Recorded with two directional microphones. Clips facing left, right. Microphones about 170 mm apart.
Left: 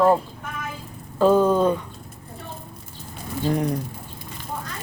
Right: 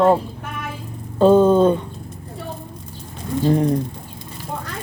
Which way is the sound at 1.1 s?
25° right (ahead or behind).